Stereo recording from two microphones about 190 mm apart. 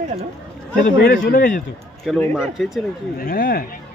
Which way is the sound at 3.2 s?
50° left (ahead or behind).